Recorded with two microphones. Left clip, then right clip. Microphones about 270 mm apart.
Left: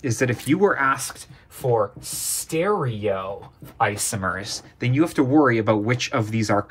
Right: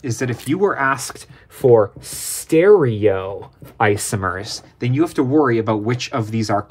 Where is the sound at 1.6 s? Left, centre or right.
Right.